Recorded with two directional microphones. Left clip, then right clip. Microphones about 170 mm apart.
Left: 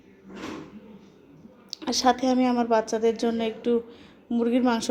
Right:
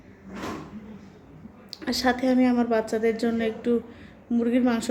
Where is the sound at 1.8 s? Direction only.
15° left (ahead or behind).